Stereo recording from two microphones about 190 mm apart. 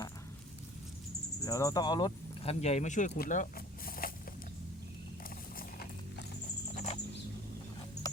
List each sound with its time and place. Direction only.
1.4 s speech: 15° left (ahead or behind); by 3.4 s 40° left (ahead or behind)
3.8 s a sound: 50° left (ahead or behind)
5.5 s horse: 55° left (ahead or behind)
6.7 s patter: 35° left (ahead or behind)